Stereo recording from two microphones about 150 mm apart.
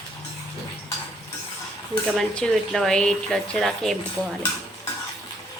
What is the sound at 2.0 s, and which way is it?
Speech, 5° left (ahead or behind).